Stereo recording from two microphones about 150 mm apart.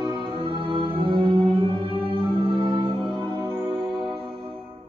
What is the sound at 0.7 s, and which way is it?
Music, 35° right (ahead or behind).